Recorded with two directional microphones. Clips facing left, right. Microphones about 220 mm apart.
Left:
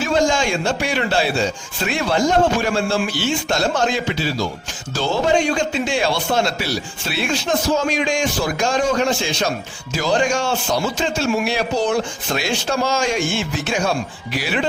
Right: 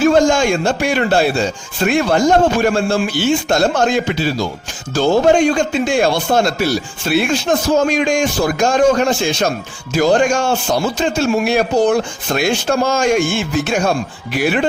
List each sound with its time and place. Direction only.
0.0 s a man's voice: 50° right (ahead or behind)